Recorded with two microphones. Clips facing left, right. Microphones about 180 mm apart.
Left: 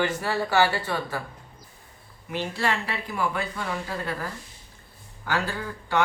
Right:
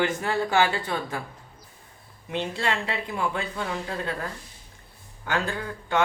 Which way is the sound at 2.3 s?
20° right (ahead or behind).